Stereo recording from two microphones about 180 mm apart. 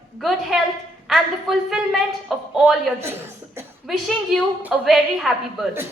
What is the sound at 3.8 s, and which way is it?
A woman's voice, centre (ahead or behind).